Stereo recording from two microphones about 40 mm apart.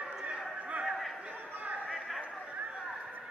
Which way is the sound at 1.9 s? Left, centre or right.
Centre.